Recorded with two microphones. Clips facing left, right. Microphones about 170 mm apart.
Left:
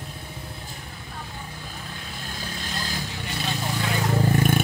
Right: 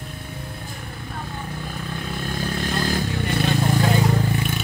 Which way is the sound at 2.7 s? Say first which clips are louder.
Right 8 dB; 55° right (ahead or behind).